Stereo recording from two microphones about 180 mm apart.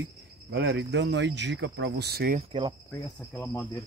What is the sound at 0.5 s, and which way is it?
Speech, 70° right (ahead or behind).